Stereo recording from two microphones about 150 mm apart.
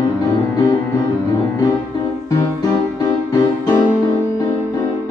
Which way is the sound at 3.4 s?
30° left (ahead or behind).